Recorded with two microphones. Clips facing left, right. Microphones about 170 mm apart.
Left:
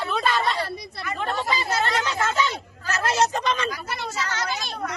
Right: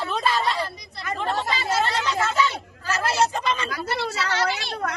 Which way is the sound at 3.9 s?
75° right (ahead or behind).